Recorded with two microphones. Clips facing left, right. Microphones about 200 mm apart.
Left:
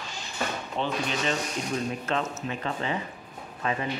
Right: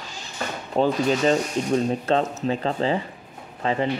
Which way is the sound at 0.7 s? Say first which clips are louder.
Right 10 dB; 40° right (ahead or behind).